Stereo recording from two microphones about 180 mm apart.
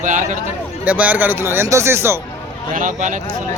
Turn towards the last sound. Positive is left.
turn(degrees=-45)  # may be behind; listen again after turning